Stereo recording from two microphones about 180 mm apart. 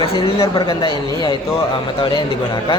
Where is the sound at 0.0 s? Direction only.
30° left (ahead or behind).